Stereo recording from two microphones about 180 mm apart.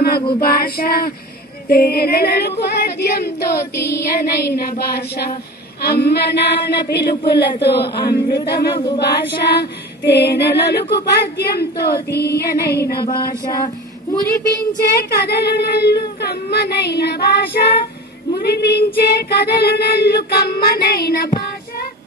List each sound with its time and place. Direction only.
0.4 s speech: 60° left (ahead or behind)
3.7 s child singing: 15° left (ahead or behind)
4.1 s speech: 60° left (ahead or behind)
8.7 s a sound: 25° left (ahead or behind)
9.1 s speech: 65° left (ahead or behind)
13.0 s a sound: 20° left (ahead or behind)
14.8 s speech: 60° left (ahead or behind)